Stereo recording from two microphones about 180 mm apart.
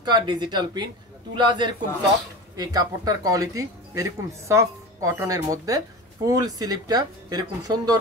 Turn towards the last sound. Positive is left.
turn(degrees=-20)  # may be behind; listen again after turning